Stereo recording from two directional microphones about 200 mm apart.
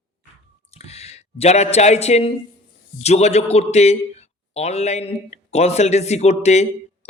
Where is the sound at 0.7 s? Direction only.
30° left (ahead or behind).